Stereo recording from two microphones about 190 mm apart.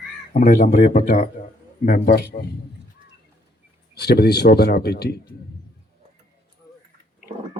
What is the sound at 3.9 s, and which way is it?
A man's voice, 60° left (ahead or behind).